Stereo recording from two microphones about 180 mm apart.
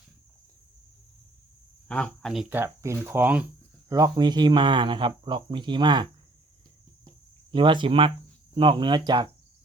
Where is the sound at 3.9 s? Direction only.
20° right (ahead or behind).